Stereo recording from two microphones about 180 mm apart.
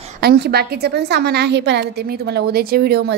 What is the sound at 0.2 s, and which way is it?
A woman's voice, 60° right (ahead or behind).